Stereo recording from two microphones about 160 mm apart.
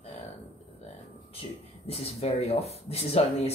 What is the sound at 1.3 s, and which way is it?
Speech, 40° left (ahead or behind).